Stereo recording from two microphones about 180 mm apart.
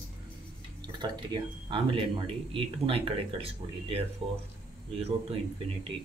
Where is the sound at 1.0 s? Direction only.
25° right (ahead or behind).